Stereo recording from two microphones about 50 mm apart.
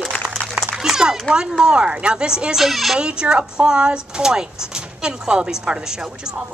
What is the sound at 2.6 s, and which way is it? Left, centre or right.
Speech, centre.